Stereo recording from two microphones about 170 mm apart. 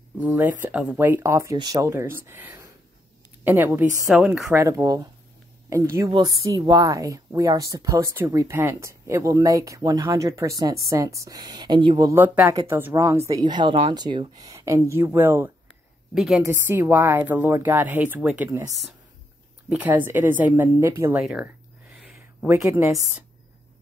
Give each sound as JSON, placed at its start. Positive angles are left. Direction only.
{"t": 0.2, "sound": "a woman's voice", "side_deg": -10}
{"t": 4.6, "sound": "speech", "side_deg": -20}
{"t": 14.6, "sound": "speech", "side_deg": -15}
{"t": 19.7, "sound": "speech", "side_deg": -10}
{"t": 21.9, "sound": "a sound", "side_deg": -5}